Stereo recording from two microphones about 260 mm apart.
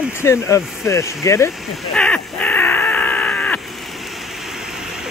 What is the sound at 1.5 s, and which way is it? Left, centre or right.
Speech, centre.